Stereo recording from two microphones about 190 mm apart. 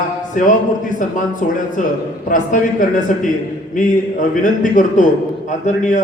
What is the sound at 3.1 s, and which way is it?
A man's voice, 40° left (ahead or behind).